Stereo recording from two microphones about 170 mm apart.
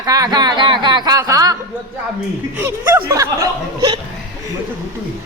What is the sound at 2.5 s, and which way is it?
A man's voice, 15° right (ahead or behind).